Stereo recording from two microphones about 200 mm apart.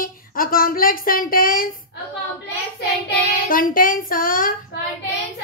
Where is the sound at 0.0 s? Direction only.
45° left (ahead or behind).